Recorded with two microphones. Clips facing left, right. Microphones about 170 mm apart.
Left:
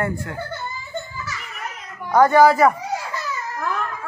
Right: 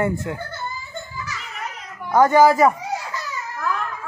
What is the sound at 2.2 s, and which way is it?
Speech, 20° right (ahead or behind).